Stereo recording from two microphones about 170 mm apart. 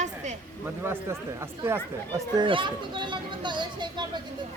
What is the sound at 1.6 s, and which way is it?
Speech, 15° right (ahead or behind).